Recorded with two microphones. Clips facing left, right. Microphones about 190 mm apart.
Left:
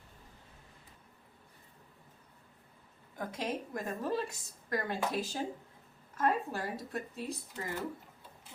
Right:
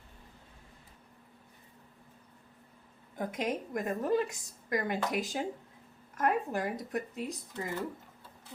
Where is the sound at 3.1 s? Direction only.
20° right (ahead or behind).